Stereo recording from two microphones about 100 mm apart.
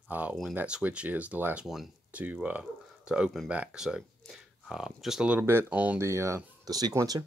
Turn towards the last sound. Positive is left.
turn(degrees=-40)  # may be behind; listen again after turning